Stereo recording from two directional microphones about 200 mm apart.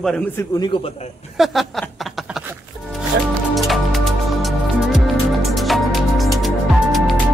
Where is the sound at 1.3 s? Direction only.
Centre (ahead or behind).